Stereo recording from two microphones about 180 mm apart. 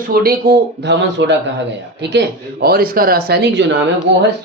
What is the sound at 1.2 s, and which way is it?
Speech, 85° right.